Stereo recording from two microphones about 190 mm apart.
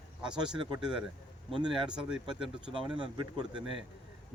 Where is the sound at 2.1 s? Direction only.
5° right (ahead or behind).